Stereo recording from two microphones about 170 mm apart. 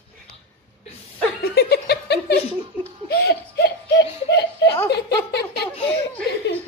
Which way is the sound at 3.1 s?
70° left (ahead or behind).